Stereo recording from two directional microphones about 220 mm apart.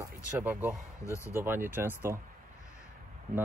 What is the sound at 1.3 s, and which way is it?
Speech, 10° right (ahead or behind).